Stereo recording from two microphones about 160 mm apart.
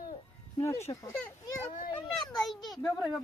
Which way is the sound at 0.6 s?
15° left (ahead or behind).